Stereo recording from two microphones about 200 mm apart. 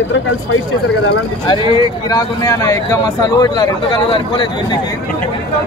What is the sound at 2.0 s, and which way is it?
A man's voice, 15° left (ahead or behind).